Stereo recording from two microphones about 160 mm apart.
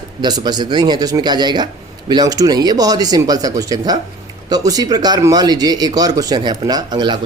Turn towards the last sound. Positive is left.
turn(degrees=-25)  # may be behind; listen again after turning